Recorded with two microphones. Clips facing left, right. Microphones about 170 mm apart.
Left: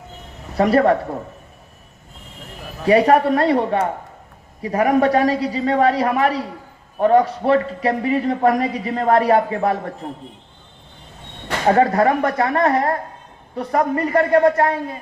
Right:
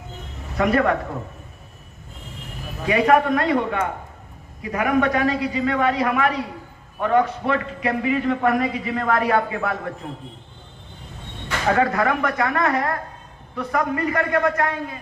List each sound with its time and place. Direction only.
0.5 s a man's voice: 35° left (ahead or behind)
2.8 s a man's voice: 35° left (ahead or behind)
11.6 s a man's voice: 35° left (ahead or behind)